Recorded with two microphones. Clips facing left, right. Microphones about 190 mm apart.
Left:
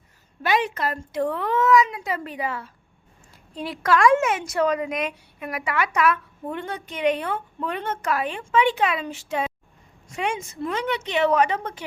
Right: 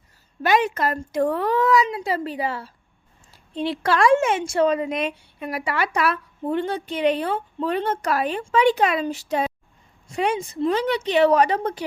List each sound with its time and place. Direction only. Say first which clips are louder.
0.4 s speech: right 3 dB; 45° right (ahead or behind)